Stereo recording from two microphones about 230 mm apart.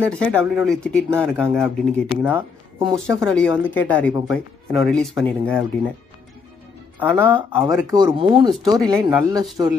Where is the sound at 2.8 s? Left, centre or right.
Centre.